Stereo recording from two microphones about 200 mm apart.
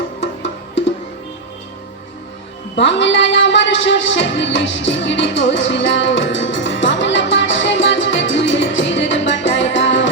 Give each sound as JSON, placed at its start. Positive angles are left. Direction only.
{"t": 0.2, "sound": "music", "side_deg": 65}
{"t": 2.7, "sound": "music", "side_deg": 65}